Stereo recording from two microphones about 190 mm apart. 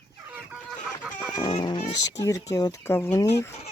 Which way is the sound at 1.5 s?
25° left (ahead or behind).